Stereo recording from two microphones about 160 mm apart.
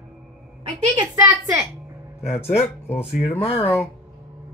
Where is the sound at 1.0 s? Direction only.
25° right (ahead or behind).